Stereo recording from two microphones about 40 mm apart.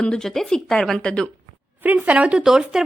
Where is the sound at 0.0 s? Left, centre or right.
Left.